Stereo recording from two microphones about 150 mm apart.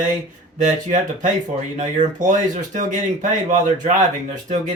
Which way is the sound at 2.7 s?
55° right (ahead or behind).